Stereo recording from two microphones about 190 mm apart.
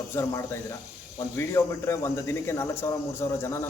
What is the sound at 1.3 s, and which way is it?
Speech, 15° left (ahead or behind).